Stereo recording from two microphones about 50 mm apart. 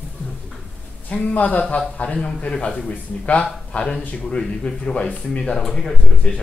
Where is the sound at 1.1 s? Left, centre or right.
Left.